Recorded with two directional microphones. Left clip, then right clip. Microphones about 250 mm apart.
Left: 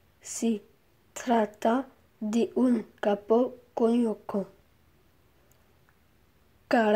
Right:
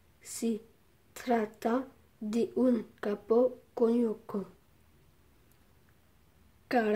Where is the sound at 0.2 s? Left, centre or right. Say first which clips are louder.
Left 4 dB; centre.